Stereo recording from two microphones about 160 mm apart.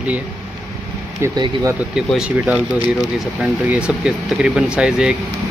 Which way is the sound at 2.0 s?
5° right (ahead or behind).